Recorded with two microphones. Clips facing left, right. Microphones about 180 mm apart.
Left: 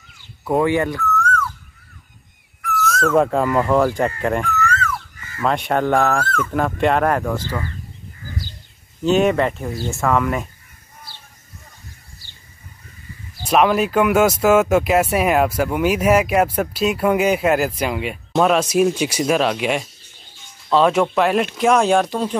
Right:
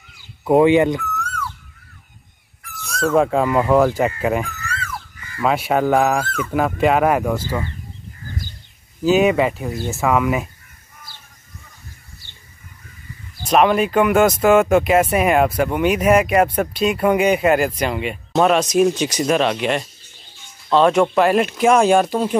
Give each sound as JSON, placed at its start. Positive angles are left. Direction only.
{"t": 0.5, "sound": "speech", "side_deg": -20}
{"t": 2.8, "sound": "dog", "side_deg": 0}
{"t": 3.2, "sound": "speech", "side_deg": 0}
{"t": 9.0, "sound": "speech", "side_deg": -5}
{"t": 13.5, "sound": "speech", "side_deg": 0}